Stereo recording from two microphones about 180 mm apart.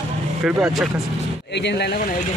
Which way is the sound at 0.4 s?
5° right (ahead or behind).